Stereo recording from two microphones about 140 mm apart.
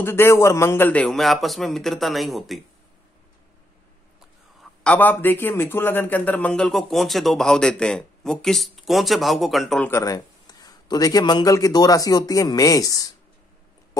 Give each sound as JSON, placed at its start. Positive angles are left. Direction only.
{"t": 0.0, "sound": "a man's voice", "side_deg": 15}
{"t": 4.8, "sound": "a man's voice", "side_deg": 10}
{"t": 9.8, "sound": "a man's voice", "side_deg": 20}